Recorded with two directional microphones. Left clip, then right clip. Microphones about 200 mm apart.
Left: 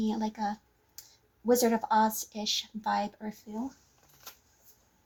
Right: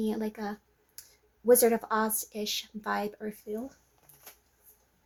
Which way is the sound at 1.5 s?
40° right (ahead or behind).